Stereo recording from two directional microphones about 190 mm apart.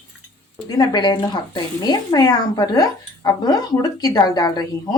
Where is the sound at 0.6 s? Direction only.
20° left (ahead or behind).